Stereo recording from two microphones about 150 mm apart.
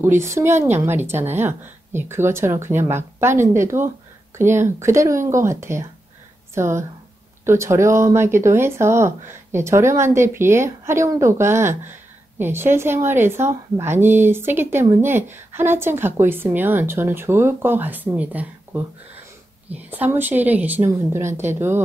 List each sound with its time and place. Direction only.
0.0 s speech: 15° right (ahead or behind)